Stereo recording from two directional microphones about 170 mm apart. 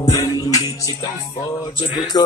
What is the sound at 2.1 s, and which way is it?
Music, 20° left (ahead or behind).